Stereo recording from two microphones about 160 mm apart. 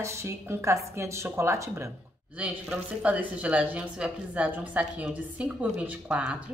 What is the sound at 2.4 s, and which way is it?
Speech, 10° right (ahead or behind).